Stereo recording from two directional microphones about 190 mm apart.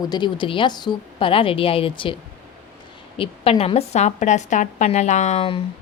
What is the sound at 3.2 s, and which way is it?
A woman's voice, 30° left (ahead or behind).